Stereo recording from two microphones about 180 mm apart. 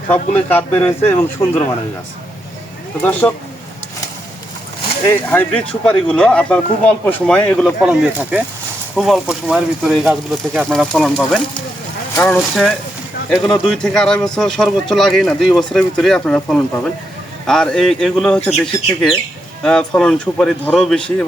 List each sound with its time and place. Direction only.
0.1 s speech: 10° left (ahead or behind)
3.0 s speech: 10° left (ahead or behind)
5.0 s speech: 10° left (ahead or behind)
9.0 s speech: centre (ahead or behind)